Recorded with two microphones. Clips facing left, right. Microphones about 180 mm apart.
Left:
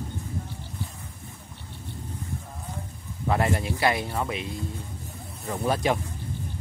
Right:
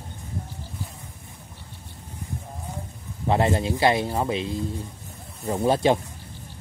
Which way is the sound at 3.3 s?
25° right (ahead or behind).